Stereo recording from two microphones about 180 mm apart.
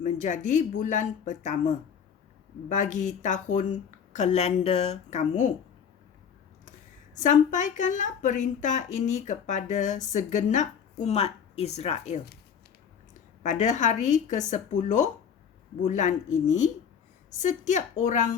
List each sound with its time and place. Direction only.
0.0 s a woman's voice: 45° left (ahead or behind)
7.2 s a woman's voice: 45° left (ahead or behind)
13.4 s speech: 40° left (ahead or behind)